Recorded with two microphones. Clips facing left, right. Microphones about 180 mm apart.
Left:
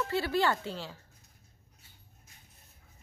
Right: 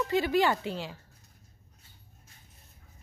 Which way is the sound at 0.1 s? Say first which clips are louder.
Right 4 dB; 15° right (ahead or behind).